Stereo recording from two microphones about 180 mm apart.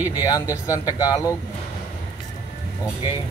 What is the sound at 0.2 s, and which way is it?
Speech, 15° left (ahead or behind).